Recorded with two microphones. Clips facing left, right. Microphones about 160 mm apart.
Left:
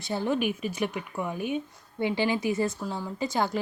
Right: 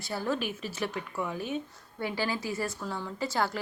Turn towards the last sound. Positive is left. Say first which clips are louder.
# left 3 dB
turn(degrees=20)  # may be behind; listen again after turning